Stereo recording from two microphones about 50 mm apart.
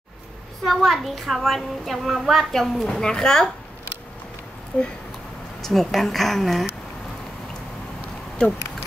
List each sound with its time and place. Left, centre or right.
0.7 s a child's voice: centre
2.9 s speech: centre
4.7 s a sound: left
5.6 s a child's voice: centre